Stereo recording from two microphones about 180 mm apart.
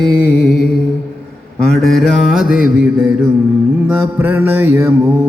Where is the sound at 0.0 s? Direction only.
5° left (ahead or behind).